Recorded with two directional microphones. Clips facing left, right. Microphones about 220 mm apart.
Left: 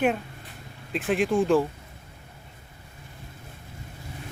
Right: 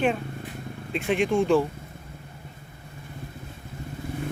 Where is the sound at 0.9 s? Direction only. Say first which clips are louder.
Even; centre (ahead or behind).